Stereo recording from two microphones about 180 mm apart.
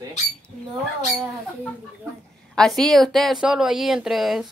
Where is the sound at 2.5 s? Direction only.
5° left (ahead or behind).